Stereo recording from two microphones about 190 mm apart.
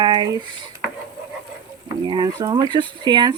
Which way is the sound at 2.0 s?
20° right (ahead or behind).